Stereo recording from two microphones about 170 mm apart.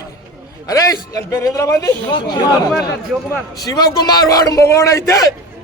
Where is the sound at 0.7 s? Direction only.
20° left (ahead or behind).